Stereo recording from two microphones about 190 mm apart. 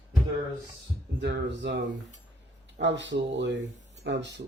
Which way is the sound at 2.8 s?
70° right (ahead or behind).